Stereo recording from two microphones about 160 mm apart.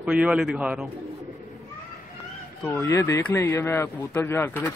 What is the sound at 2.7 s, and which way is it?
Speech, 20° left (ahead or behind).